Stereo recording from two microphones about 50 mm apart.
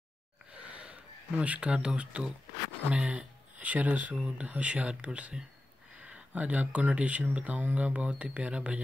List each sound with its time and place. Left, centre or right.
0.5 s gasp: right
1.4 s speech: right